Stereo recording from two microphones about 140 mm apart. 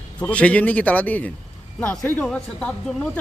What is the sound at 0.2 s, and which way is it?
Speech, 10° left (ahead or behind).